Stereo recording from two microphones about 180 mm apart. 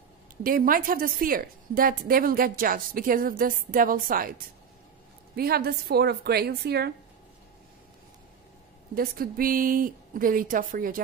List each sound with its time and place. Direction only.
0.4 s a woman's voice: 50° right (ahead or behind)
5.3 s a woman's voice: 60° right (ahead or behind)
8.9 s a woman's voice: 55° right (ahead or behind)